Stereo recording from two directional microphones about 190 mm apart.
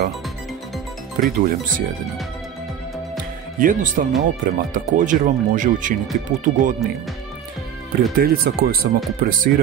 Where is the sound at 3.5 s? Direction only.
45° right (ahead or behind).